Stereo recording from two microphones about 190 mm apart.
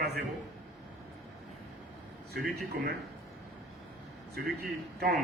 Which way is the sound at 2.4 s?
55° right (ahead or behind).